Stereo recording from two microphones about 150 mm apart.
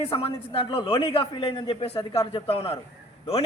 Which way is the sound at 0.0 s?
40° left (ahead or behind).